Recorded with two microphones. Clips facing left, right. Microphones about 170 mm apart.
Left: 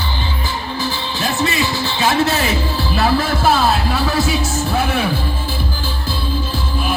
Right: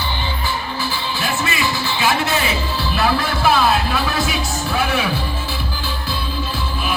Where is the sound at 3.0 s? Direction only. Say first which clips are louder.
Left 3 dB; 35° left (ahead or behind).